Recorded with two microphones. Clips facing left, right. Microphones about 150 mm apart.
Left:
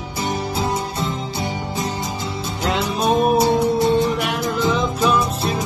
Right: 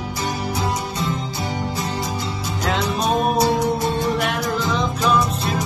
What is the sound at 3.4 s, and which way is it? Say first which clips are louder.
Music: left 2 dB; 20° left (ahead or behind).